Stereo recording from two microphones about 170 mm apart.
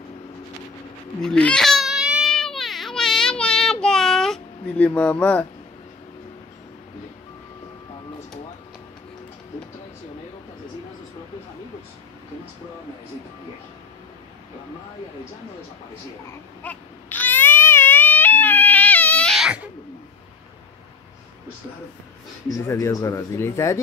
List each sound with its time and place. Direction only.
1.2 s baby cry: 5° left (ahead or behind)
16.6 s baby cry: 10° left (ahead or behind); by 19.7 s 5° right (ahead or behind)
22.5 s speech: 20° left (ahead or behind)